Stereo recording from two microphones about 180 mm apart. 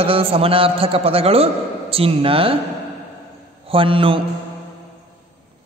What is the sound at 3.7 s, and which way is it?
Mantra, 30° right (ahead or behind).